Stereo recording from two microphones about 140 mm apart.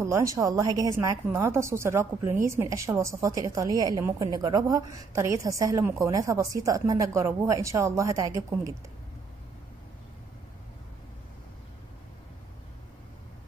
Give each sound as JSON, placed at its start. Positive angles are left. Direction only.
{"t": 0.0, "sound": "a woman's voice", "side_deg": -20}